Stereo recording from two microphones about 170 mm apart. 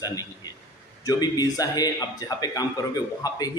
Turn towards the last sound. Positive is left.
turn(degrees=20)  # may be behind; listen again after turning